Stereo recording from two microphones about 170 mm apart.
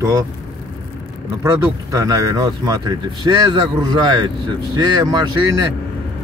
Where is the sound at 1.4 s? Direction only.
20° right (ahead or behind).